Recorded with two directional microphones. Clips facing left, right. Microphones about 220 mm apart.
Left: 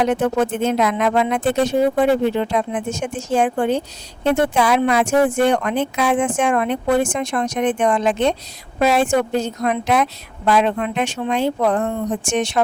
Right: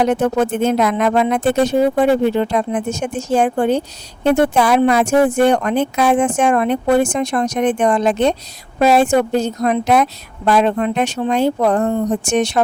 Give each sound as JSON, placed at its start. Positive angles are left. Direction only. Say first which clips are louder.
{"t": 0.0, "sound": "speech", "louder": "right 2 dB", "side_deg": -40}